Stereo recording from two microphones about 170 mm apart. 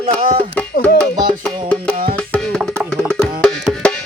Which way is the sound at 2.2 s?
5° left (ahead or behind).